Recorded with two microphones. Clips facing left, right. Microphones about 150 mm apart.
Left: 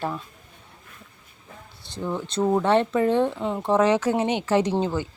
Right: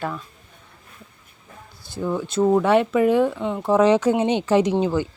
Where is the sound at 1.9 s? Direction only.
5° right (ahead or behind).